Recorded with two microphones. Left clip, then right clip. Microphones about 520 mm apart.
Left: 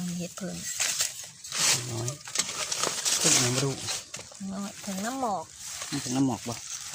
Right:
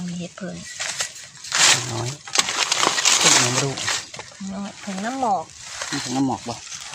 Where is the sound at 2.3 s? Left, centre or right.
Right.